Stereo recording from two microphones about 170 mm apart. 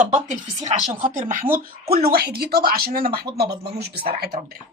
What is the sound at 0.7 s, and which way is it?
Speech, 45° right (ahead or behind).